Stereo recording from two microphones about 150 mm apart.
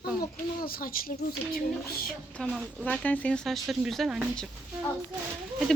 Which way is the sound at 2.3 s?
5° left (ahead or behind).